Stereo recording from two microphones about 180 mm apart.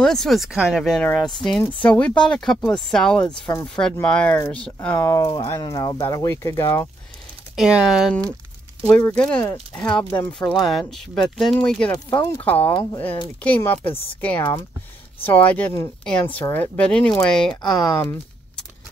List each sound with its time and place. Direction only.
0.0 s speech: 5° left (ahead or behind)
7.5 s speech: 5° right (ahead or behind)
11.9 s speech: 15° left (ahead or behind)